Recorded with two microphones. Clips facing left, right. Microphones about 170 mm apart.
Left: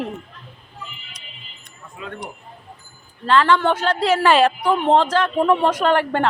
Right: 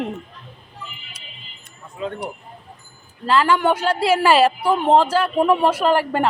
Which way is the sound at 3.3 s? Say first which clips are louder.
Left 1 dB; 10° right (ahead or behind).